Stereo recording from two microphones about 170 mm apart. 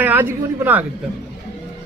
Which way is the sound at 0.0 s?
10° right (ahead or behind).